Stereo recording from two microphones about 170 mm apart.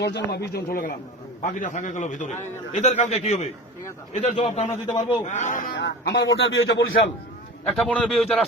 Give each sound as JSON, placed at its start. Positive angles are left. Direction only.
{"t": 0.0, "sound": "a man's voice", "side_deg": 85}
{"t": 5.2, "sound": "a man's voice", "side_deg": 45}
{"t": 5.7, "sound": "a man's voice", "side_deg": 90}
{"t": 7.6, "sound": "a man's voice", "side_deg": 5}